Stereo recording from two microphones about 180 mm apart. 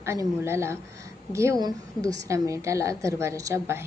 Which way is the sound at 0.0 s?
15° right (ahead or behind).